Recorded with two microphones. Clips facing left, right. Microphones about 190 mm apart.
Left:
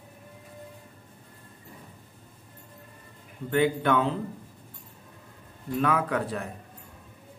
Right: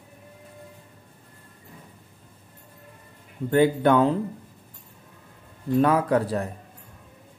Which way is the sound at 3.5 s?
40° right (ahead or behind).